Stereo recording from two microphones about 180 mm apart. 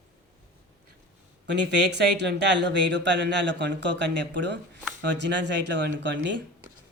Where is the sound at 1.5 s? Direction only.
70° right (ahead or behind).